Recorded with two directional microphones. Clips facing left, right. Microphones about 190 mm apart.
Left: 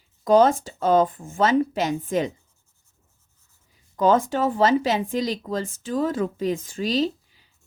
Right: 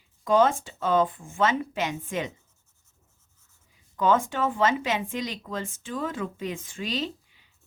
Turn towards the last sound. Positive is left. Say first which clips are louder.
# left 9 dB
turn(degrees=35)  # may be behind; listen again after turning